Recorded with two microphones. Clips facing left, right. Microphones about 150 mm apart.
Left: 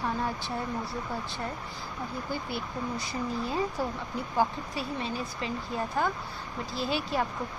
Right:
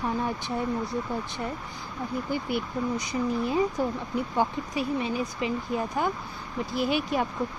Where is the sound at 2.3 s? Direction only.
20° right (ahead or behind).